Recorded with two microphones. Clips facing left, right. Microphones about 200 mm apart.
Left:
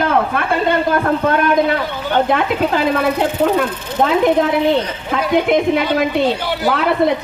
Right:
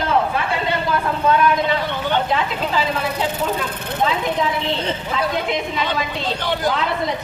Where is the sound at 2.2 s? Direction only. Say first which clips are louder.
Left 6 dB; 55° left (ahead or behind).